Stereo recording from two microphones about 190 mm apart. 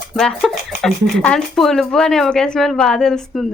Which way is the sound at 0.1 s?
5° left (ahead or behind).